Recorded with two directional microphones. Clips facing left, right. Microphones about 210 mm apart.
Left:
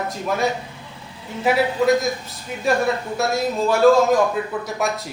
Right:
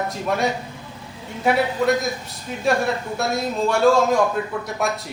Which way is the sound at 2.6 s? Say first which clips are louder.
Left 1 dB; centre (ahead or behind).